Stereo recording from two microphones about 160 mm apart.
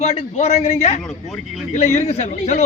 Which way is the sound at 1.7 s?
45° left (ahead or behind).